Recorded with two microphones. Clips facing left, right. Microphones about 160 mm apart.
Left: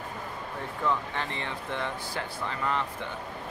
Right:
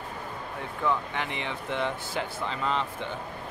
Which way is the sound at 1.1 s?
15° right (ahead or behind).